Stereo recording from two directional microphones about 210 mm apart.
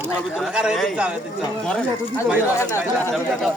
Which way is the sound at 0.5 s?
Centre (ahead or behind).